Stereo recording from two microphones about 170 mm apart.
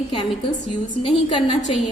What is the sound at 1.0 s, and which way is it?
Speech, 30° left (ahead or behind).